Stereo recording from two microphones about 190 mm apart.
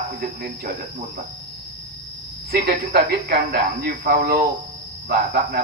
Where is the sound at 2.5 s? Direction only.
55° right (ahead or behind).